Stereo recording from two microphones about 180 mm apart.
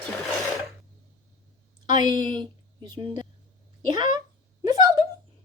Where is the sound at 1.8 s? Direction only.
25° right (ahead or behind).